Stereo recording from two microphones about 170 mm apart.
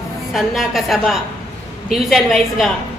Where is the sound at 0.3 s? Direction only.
Centre (ahead or behind).